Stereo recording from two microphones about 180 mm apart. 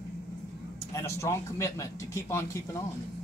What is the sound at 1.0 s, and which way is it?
Speech, 15° left (ahead or behind).